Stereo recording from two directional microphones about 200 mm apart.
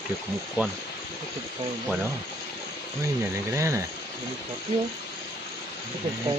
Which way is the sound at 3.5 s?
15° right (ahead or behind).